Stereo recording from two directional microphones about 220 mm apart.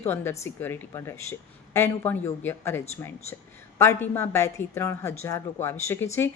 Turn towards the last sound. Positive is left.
turn(degrees=10)  # may be behind; listen again after turning